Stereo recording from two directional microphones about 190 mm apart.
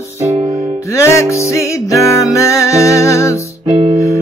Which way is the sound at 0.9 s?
15° left (ahead or behind).